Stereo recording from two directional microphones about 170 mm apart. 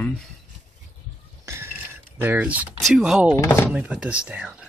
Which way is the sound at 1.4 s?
15° right (ahead or behind).